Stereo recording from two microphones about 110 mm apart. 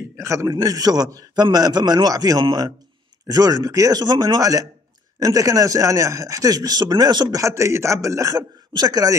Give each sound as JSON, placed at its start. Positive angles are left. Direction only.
{"t": 0.2, "sound": "a man's voice", "side_deg": -25}